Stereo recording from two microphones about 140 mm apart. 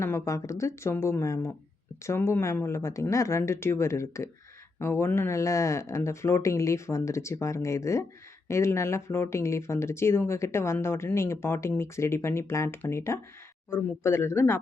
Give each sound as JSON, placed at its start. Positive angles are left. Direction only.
{"t": 0.0, "sound": "speech", "side_deg": 20}